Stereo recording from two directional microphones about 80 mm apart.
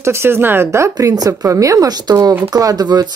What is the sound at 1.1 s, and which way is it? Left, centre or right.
Speech, right.